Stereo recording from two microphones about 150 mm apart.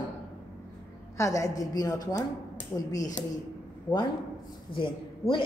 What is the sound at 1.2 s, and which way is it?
A woman's voice, 20° left (ahead or behind).